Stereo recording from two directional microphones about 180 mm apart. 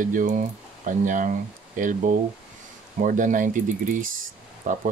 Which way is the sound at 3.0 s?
45° right (ahead or behind).